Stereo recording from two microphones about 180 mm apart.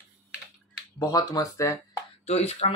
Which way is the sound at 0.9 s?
20° left (ahead or behind).